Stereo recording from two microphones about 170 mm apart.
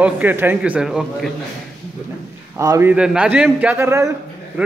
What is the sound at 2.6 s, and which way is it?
Speech, 15° right (ahead or behind).